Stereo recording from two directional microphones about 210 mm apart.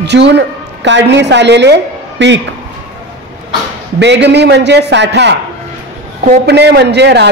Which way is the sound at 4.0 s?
55° right (ahead or behind).